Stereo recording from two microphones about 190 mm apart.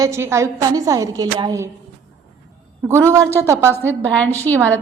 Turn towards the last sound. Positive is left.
turn(degrees=-15)  # may be behind; listen again after turning